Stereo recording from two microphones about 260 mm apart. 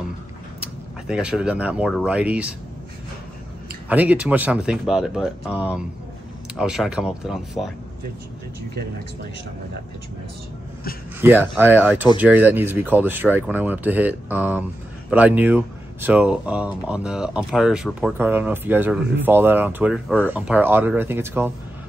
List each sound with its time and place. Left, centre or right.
0.6 s speech: centre
3.9 s speech: centre
11.1 s speech: centre